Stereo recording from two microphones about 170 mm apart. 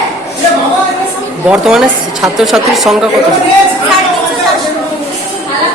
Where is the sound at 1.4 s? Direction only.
5° right (ahead or behind).